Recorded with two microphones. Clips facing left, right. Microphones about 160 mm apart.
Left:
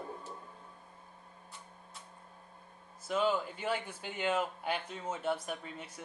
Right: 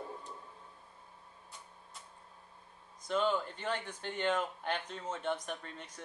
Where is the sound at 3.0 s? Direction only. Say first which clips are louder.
Left 1 dB; 5° left (ahead or behind).